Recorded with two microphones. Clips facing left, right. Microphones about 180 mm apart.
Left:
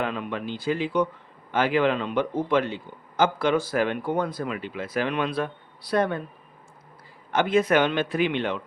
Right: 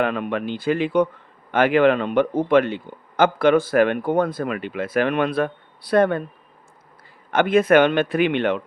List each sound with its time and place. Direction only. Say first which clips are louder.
0.0 s a man's voice: right 6 dB; 60° right (ahead or behind)
7.3 s a man's voice: right 5 dB; 55° right (ahead or behind)